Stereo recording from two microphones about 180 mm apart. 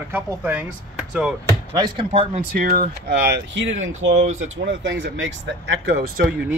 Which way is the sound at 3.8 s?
90° right.